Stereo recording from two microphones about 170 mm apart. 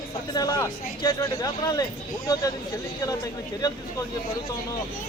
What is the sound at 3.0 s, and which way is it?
Speech, 20° left (ahead or behind).